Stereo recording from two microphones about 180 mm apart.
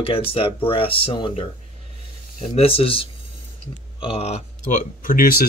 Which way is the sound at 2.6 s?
30° left (ahead or behind).